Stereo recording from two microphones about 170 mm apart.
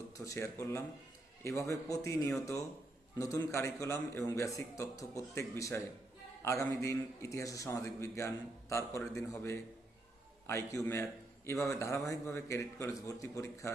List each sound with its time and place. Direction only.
0.1 s a man's voice: 20° left (ahead or behind)